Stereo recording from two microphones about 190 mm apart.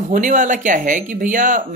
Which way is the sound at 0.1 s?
40° right (ahead or behind).